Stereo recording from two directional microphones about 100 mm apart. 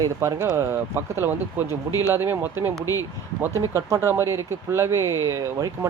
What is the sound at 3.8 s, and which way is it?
Speech, 30° right (ahead or behind).